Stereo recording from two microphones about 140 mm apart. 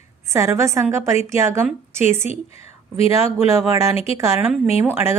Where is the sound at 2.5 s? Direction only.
45° left (ahead or behind).